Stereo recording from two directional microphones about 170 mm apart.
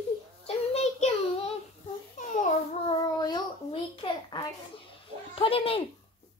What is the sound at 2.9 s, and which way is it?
A child's voice, 25° left (ahead or behind).